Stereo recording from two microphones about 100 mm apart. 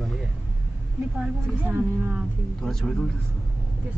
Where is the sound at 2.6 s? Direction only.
5° left (ahead or behind).